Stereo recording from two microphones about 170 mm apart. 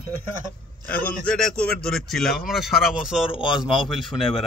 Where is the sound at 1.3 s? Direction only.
5° left (ahead or behind).